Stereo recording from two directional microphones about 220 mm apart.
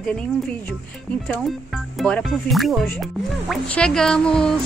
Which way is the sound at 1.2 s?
Centre (ahead or behind).